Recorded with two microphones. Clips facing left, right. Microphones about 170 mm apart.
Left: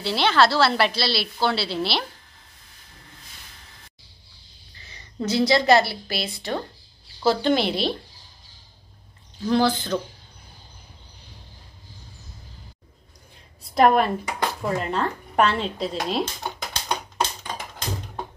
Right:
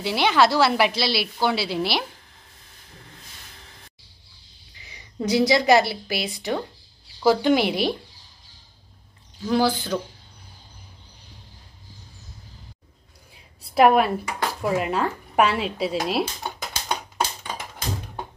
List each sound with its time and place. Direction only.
0.0 s a woman's voice: 15° right (ahead or behind)
4.7 s a woman's voice: 15° right (ahead or behind)
9.5 s a woman's voice: 10° right (ahead or behind)
13.6 s a woman's voice: 5° right (ahead or behind)
17.5 s music: 10° right (ahead or behind)